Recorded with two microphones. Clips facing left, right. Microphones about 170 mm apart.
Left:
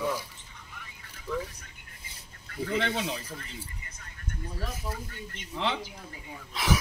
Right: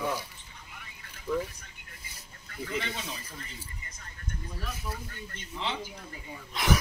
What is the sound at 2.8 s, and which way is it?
Speech, 70° left (ahead or behind).